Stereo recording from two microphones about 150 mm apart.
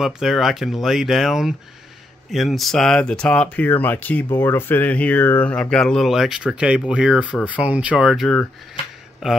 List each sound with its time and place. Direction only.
0.0 s speech: centre (ahead or behind)